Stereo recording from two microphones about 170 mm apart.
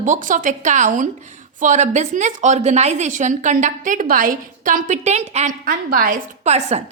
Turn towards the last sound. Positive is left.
turn(degrees=-40)  # may be behind; listen again after turning